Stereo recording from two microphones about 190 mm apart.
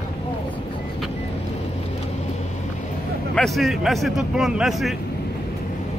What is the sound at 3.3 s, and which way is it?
Speech, centre (ahead or behind).